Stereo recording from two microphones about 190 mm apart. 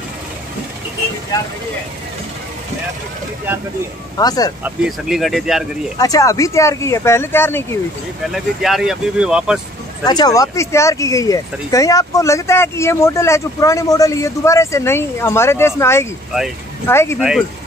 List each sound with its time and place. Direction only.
4.2 s speech: 20° left (ahead or behind)
4.6 s speech: centre (ahead or behind)
5.9 s speech: 20° left (ahead or behind)
8.3 s speech: centre (ahead or behind)
10.0 s speech: 20° left (ahead or behind)